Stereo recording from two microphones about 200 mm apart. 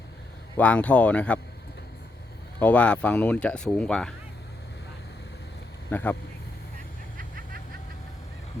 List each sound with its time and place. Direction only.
0.5 s speech: 5° left (ahead or behind)
2.6 s speech: 5° left (ahead or behind)
5.9 s speech: 10° left (ahead or behind)
7.2 s vehicle: 45° right (ahead or behind)